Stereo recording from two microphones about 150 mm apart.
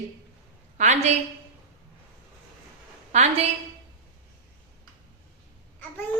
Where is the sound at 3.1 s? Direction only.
50° right (ahead or behind).